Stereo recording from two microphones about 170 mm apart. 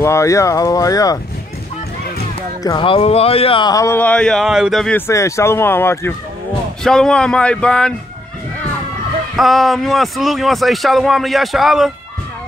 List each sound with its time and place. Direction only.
0.0 s speech: 15° left (ahead or behind)
2.6 s speech: 30° left (ahead or behind); by 4.9 s centre (ahead or behind)
4.9 s speech: 15° left (ahead or behind)
6.8 s a man's voice: 5° left (ahead or behind)
9.4 s a man's voice: centre (ahead or behind)